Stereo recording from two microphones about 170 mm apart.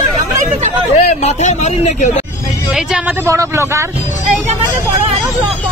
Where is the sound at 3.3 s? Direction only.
15° right (ahead or behind).